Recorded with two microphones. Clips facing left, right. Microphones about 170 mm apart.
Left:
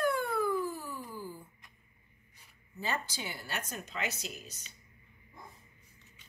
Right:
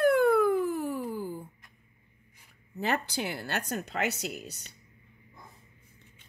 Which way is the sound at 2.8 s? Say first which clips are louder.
Right 7 dB; 60° right (ahead or behind).